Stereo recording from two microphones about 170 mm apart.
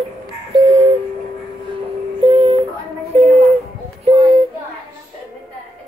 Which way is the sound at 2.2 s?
35° right (ahead or behind).